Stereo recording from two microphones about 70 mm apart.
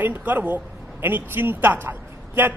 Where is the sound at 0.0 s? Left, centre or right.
Right.